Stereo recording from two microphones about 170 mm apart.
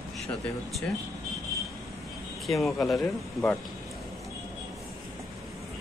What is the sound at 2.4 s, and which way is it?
Speech, centre (ahead or behind).